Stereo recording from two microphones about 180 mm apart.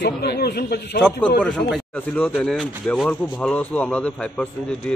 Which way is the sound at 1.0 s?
5° left (ahead or behind).